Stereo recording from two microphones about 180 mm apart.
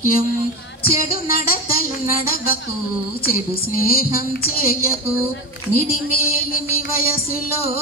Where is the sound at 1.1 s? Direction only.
55° left (ahead or behind).